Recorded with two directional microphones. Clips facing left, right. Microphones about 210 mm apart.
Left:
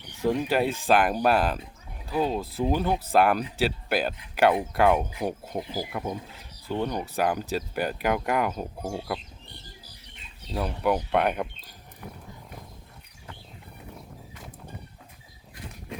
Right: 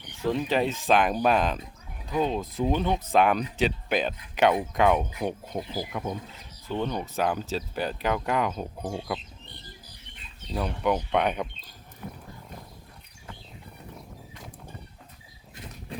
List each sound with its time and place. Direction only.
0.0 s speech: 10° left (ahead or behind)
10.5 s speech: 5° left (ahead or behind)
13.9 s music: centre (ahead or behind)
15.9 s run: 30° right (ahead or behind)